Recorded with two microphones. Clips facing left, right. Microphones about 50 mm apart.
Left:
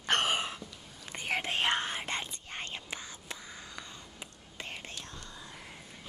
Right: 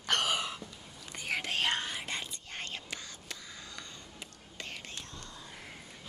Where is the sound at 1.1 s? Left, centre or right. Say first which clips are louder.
Left 2 dB; left.